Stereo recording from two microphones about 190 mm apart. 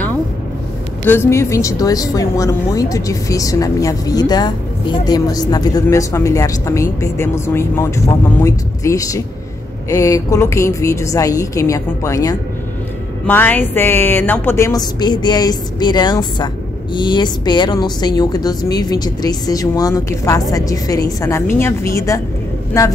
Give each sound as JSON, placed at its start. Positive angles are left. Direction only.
{"t": 1.0, "sound": "a woman's voice", "side_deg": 10}